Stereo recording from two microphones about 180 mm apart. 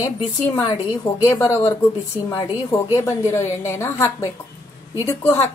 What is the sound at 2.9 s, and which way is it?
A woman's voice, 15° left (ahead or behind).